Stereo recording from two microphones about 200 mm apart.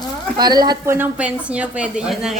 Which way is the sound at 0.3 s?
20° right (ahead or behind).